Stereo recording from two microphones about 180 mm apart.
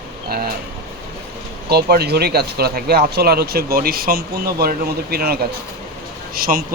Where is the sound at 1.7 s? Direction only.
60° right (ahead or behind).